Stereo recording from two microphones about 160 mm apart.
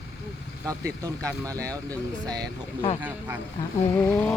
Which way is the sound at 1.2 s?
5° left (ahead or behind).